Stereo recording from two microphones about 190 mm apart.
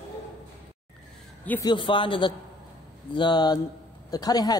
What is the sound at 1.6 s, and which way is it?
A man's voice, 25° left (ahead or behind).